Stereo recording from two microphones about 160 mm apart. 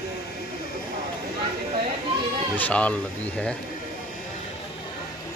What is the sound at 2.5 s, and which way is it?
Speech, 10° left (ahead or behind).